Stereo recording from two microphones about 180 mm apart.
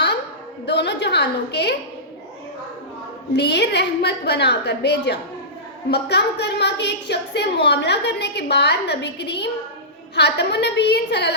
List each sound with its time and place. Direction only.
0.6 s a woman's voice: 70° left (ahead or behind)
3.3 s a woman's voice: 70° left (ahead or behind)